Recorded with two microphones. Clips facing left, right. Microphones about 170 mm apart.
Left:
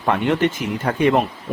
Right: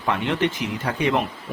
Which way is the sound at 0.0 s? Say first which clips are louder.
Left 4 dB; 50° left (ahead or behind).